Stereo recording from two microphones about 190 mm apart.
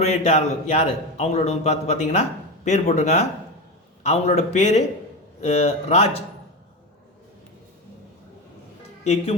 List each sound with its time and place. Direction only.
0.0 s a man's voice: 35° left (ahead or behind)